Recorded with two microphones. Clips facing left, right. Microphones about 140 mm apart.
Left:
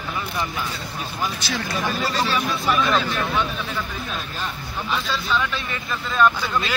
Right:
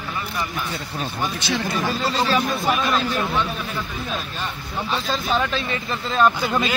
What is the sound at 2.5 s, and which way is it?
Speech, 45° right (ahead or behind).